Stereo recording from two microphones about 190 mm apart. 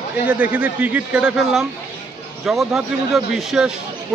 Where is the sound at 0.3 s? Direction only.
10° right (ahead or behind).